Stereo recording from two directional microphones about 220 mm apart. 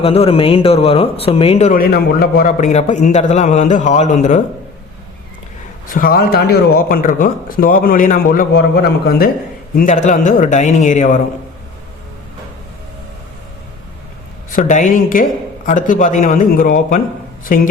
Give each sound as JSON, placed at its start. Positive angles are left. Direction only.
{"t": 0.0, "sound": "speech", "side_deg": 25}
{"t": 5.9, "sound": "speech", "side_deg": 40}
{"t": 14.5, "sound": "speech", "side_deg": 35}